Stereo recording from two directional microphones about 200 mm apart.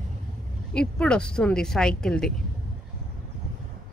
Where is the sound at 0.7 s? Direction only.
5° left (ahead or behind).